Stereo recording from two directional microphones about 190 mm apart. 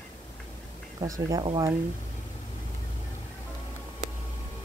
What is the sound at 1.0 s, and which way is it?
Speech, 20° right (ahead or behind).